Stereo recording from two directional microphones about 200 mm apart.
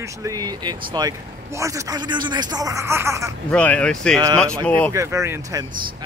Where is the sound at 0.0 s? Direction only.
15° right (ahead or behind).